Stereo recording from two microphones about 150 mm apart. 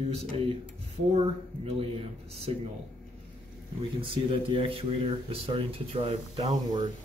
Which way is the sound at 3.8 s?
35° right (ahead or behind).